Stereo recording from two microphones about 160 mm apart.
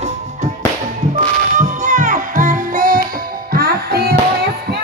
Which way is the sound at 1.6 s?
50° right (ahead or behind).